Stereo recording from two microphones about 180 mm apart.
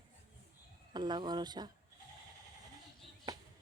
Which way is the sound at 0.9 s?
25° right (ahead or behind).